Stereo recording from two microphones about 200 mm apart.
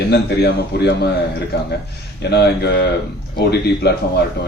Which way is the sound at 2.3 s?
55° left (ahead or behind).